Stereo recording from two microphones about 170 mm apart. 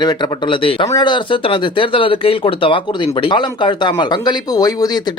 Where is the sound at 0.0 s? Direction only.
30° left (ahead or behind).